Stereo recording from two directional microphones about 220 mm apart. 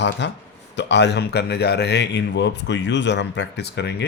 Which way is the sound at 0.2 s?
55° left (ahead or behind).